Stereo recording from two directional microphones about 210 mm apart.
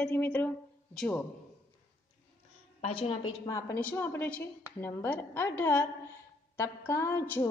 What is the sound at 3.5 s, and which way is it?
A woman's voice, 15° left (ahead or behind).